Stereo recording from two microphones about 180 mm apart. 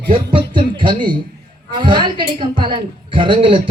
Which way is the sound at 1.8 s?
25° right (ahead or behind).